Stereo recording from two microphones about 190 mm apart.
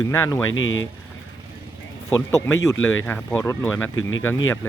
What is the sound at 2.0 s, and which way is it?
Speech, 15° left (ahead or behind).